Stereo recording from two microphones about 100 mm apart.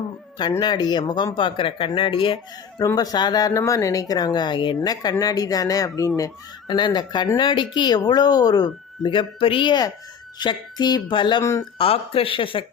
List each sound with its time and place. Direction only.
0.6 s speech: 45° left (ahead or behind)
2.8 s speech: 40° left (ahead or behind)
6.7 s speech: 50° left (ahead or behind)
11.8 s speech: 65° left (ahead or behind)